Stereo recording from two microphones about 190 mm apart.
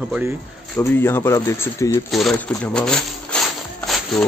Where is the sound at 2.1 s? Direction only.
Centre (ahead or behind).